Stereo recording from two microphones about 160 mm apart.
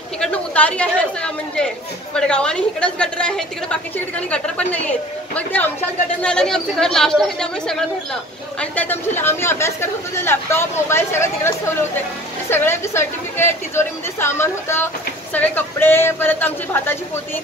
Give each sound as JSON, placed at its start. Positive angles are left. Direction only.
{"t": 0.2, "sound": "a woman's voice", "side_deg": 5}